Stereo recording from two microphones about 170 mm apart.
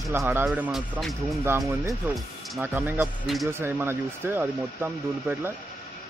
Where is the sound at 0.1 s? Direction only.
15° right (ahead or behind).